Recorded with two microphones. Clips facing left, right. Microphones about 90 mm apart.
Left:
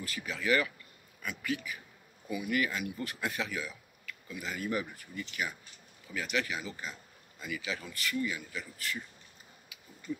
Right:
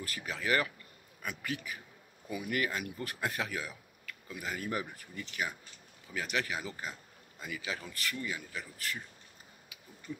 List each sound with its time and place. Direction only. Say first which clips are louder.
0.0 s speech: left 1 dB; 40° right (ahead or behind)